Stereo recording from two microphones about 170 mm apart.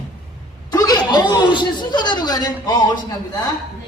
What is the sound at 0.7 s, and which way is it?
Speech, 20° left (ahead or behind).